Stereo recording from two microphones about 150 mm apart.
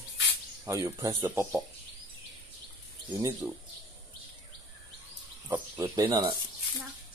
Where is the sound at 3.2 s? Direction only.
20° right (ahead or behind).